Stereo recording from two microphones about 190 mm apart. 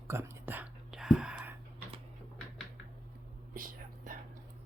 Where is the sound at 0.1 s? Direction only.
15° right (ahead or behind).